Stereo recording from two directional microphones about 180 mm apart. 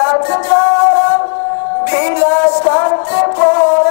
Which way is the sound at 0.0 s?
15° left (ahead or behind).